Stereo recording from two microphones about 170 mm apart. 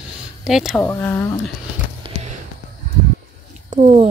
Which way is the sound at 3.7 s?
45° right (ahead or behind).